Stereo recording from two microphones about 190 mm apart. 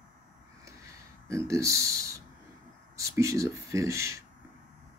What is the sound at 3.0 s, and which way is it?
Speech, 15° right (ahead or behind).